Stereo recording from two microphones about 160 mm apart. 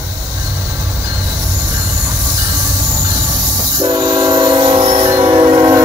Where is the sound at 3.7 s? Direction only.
25° right (ahead or behind).